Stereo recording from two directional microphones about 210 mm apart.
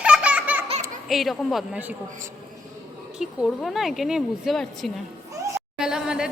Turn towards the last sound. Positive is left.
turn(degrees=-5)  # may be behind; listen again after turning